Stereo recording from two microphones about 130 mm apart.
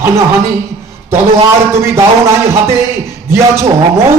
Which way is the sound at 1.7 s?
20° right (ahead or behind).